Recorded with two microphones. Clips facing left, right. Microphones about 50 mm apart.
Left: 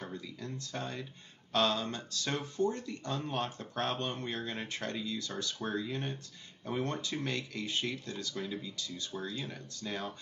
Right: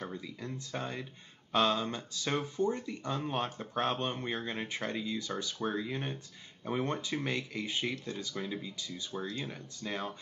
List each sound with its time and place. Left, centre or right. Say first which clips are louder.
0.1 s speech: right 1 dB; centre